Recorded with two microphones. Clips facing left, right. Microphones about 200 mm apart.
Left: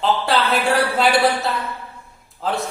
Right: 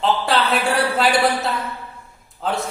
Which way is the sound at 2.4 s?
Centre (ahead or behind).